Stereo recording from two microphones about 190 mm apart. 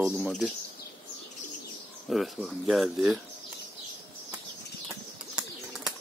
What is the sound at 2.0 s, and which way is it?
Speech, centre (ahead or behind).